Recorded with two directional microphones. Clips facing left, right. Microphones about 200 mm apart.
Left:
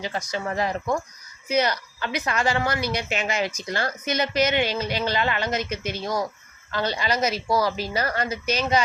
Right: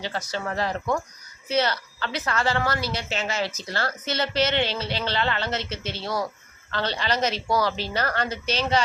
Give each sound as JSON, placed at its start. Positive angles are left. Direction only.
{"t": 0.3, "sound": "a woman's voice", "side_deg": 15}